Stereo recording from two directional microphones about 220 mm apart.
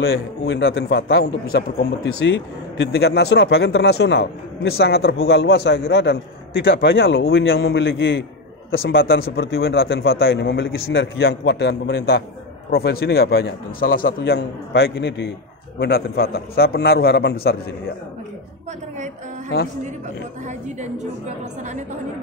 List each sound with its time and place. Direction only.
0.0 s a man's voice: 50° left (ahead or behind)
5.1 s a man's voice: 60° left (ahead or behind); by 17.9 s 45° left (ahead or behind)
20.4 s a woman's voice: 30° right (ahead or behind)